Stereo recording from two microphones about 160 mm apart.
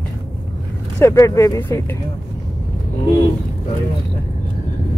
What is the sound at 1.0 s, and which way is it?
Speech, 15° left (ahead or behind).